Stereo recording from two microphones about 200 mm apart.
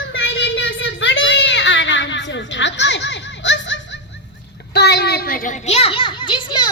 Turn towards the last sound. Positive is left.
turn(degrees=20)  # may be behind; listen again after turning